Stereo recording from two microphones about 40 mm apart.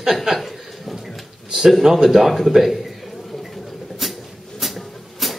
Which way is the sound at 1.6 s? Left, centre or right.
Centre.